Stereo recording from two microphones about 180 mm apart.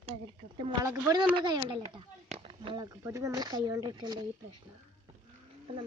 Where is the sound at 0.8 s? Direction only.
20° right (ahead or behind).